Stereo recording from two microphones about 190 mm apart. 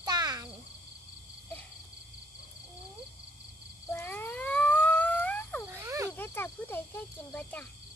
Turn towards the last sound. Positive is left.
turn(degrees=10)  # may be behind; listen again after turning